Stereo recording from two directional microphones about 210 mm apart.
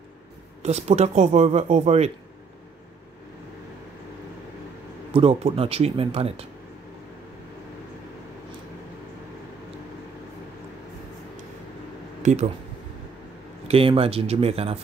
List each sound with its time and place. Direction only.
0.6 s speech: 30° right (ahead or behind)
5.1 s speech: 25° right (ahead or behind)
12.2 s a sound: 35° right (ahead or behind)
13.7 s speech: 25° right (ahead or behind)